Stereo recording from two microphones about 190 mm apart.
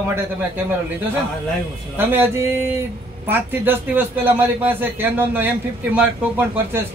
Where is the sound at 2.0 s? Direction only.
10° right (ahead or behind).